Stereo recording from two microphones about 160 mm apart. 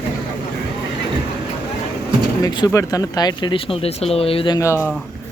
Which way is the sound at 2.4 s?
20° left (ahead or behind).